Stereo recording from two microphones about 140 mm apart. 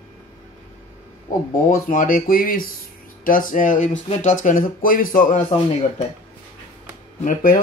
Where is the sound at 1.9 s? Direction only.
80° left.